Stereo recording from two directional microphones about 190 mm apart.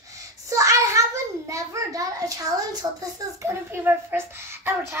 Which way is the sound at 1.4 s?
15° right (ahead or behind).